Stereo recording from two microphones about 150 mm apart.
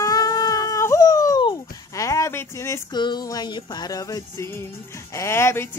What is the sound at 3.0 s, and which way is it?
Music, 25° left (ahead or behind).